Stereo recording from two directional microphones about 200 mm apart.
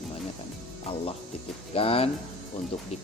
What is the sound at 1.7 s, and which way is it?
Speech, 30° left (ahead or behind).